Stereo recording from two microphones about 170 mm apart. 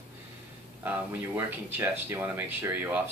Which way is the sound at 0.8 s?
10° right (ahead or behind).